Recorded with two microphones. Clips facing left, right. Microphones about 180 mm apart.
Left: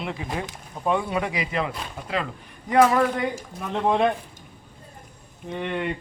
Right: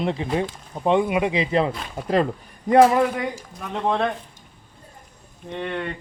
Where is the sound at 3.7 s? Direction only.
10° left (ahead or behind).